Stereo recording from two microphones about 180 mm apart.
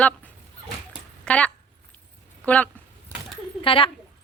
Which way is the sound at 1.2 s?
5° left (ahead or behind).